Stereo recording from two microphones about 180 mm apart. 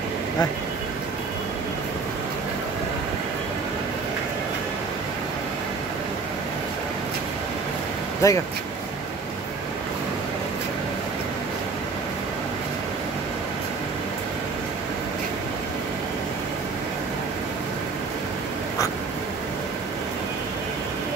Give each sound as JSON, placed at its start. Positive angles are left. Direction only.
{"t": 8.2, "sound": "speech", "side_deg": 15}